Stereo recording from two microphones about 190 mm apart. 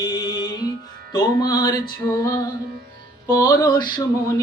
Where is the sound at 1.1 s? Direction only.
20° left (ahead or behind).